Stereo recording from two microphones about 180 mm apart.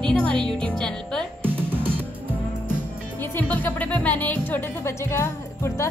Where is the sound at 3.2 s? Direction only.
10° left (ahead or behind).